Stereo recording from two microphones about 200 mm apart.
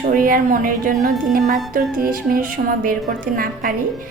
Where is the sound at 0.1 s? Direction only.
45° right (ahead or behind).